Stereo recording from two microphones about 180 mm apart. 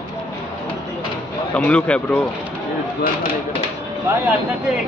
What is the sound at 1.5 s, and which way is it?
Speech, 5° left (ahead or behind).